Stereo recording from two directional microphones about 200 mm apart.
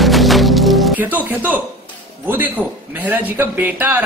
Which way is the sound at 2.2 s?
10° right (ahead or behind).